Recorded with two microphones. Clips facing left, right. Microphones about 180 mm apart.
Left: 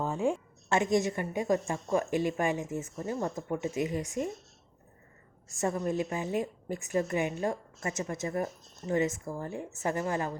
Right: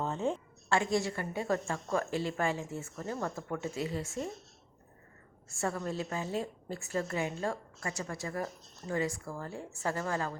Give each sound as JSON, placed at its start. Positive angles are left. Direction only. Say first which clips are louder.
{"t": 0.0, "sound": "a woman's voice", "louder": "left 3 dB", "side_deg": 10}
{"t": 5.5, "sound": "a woman's voice", "louder": "left 4 dB", "side_deg": 20}